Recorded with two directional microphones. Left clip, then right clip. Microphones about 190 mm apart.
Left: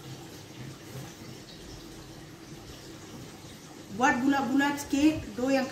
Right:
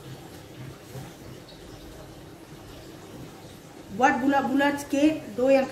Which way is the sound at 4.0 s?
10° right (ahead or behind).